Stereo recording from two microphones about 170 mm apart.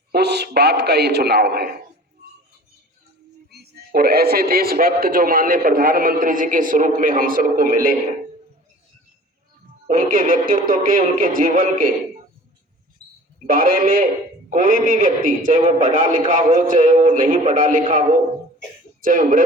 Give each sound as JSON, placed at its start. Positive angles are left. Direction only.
{"t": 0.1, "sound": "a man's voice", "side_deg": -75}
{"t": 3.5, "sound": "a man's voice", "side_deg": -70}
{"t": 9.8, "sound": "speech", "side_deg": -55}
{"t": 13.5, "sound": "a man's voice", "side_deg": -55}
{"t": 19.0, "sound": "speech", "side_deg": -50}